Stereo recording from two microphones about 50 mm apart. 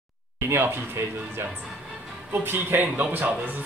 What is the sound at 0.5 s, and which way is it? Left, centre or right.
Speech, right.